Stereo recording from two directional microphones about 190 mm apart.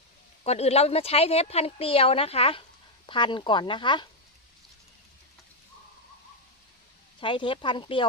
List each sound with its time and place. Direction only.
0.4 s speech: 35° left (ahead or behind)
7.2 s speech: 25° left (ahead or behind)